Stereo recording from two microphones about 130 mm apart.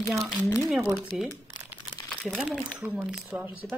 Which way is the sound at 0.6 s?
Centre (ahead or behind).